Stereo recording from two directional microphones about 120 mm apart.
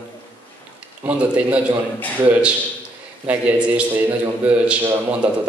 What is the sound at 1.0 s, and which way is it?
Speech, 10° right (ahead or behind).